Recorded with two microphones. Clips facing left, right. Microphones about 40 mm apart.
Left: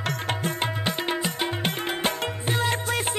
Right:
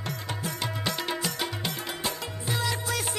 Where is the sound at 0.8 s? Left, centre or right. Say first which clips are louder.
Left 1 dB; left.